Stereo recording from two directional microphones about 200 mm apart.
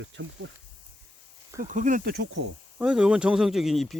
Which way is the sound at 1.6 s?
40° right (ahead or behind).